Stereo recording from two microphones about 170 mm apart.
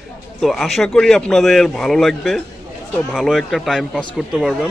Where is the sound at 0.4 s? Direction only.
Centre (ahead or behind).